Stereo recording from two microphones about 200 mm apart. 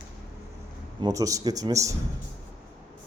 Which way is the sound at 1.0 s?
15° right (ahead or behind).